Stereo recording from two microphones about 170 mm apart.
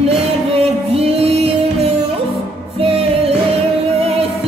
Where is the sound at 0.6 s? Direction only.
35° right (ahead or behind).